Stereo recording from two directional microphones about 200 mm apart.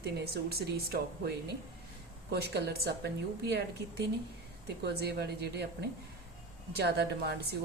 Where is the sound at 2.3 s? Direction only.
55° right (ahead or behind).